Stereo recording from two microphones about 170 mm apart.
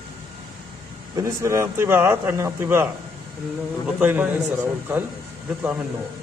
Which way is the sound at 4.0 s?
10° right (ahead or behind).